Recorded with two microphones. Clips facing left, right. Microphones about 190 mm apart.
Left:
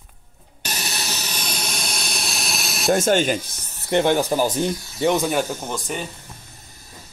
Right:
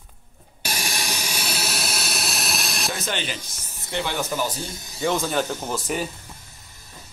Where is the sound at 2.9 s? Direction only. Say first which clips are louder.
Left 14 dB; 50° left (ahead or behind).